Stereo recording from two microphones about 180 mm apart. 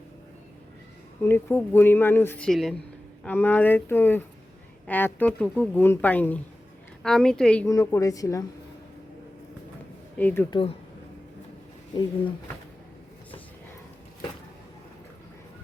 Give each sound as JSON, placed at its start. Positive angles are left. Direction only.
{"t": 1.2, "sound": "a woman's voice", "side_deg": 10}
{"t": 7.7, "sound": "a woman's voice", "side_deg": 15}
{"t": 10.2, "sound": "speech", "side_deg": 10}